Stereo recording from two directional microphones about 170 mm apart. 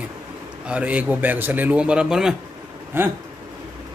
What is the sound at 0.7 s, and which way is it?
A man's voice, 10° right (ahead or behind).